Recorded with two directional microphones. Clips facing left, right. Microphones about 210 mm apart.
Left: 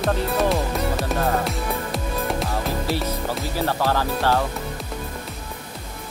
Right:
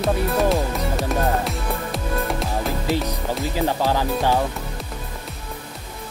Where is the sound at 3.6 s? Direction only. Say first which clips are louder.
Right 1 dB; 15° right (ahead or behind).